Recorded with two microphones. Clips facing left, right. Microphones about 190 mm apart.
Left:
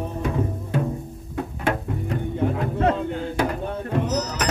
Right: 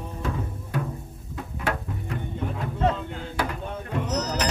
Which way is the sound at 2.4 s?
70° left (ahead or behind).